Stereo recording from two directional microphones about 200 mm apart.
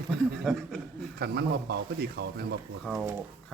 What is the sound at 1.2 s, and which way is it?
Speech, 55° right (ahead or behind).